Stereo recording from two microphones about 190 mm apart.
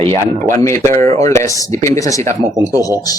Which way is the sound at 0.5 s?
15° left (ahead or behind).